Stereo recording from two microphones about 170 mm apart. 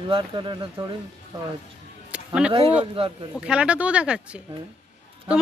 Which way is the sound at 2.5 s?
35° right (ahead or behind).